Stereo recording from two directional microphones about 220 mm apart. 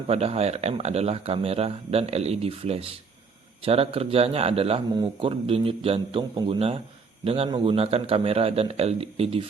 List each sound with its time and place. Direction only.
0.1 s speech: 25° right (ahead or behind)